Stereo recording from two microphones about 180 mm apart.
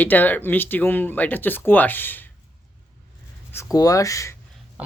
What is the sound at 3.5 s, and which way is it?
Speech, 20° left (ahead or behind).